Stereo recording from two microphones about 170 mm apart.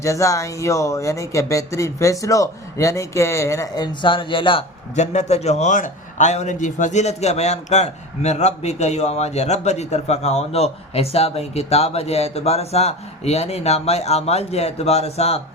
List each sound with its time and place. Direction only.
0.0 s speech: 20° left (ahead or behind)
4.9 s a man's voice: 40° left (ahead or behind)